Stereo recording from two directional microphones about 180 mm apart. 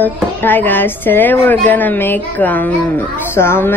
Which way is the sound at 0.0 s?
10° left (ahead or behind).